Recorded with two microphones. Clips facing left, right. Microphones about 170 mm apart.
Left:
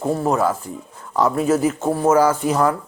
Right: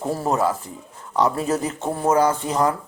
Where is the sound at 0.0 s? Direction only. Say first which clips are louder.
Left 3 dB; centre (ahead or behind).